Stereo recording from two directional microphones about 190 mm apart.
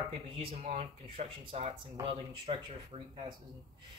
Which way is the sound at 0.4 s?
35° right (ahead or behind).